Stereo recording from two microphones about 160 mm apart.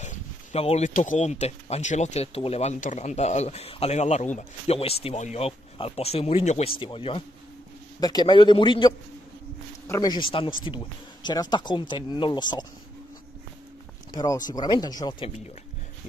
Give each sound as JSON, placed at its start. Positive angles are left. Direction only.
{"t": 0.0, "sound": "a man's voice", "side_deg": 45}
{"t": 14.1, "sound": "speech", "side_deg": 25}